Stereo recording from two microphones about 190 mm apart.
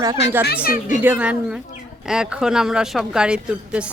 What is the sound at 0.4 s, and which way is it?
Speech, 55° left (ahead or behind).